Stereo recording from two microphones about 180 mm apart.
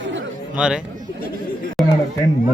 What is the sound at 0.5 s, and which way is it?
Speech, 5° right (ahead or behind).